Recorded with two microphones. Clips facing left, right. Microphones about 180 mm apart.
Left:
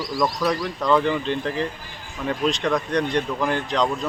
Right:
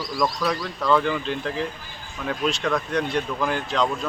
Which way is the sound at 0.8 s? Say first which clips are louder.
Left 1 dB; 15° left (ahead or behind).